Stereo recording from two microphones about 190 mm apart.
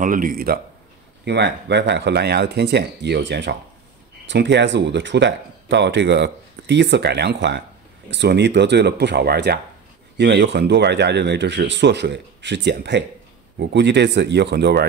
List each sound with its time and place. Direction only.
0.0 s speech: 45° right (ahead or behind)
1.2 s speech: 65° right (ahead or behind)